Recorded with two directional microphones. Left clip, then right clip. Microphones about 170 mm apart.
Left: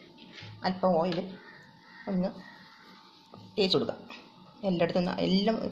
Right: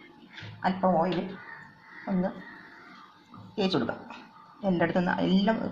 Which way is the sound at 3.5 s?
30° left (ahead or behind).